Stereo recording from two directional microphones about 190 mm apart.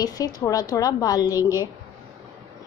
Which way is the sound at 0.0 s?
20° left (ahead or behind).